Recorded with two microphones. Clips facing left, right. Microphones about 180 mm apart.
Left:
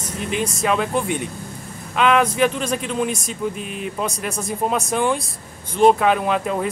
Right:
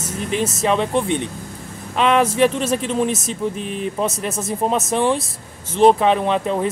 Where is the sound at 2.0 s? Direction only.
30° right (ahead or behind).